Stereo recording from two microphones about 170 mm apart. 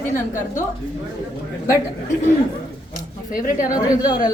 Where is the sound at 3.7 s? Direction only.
20° left (ahead or behind).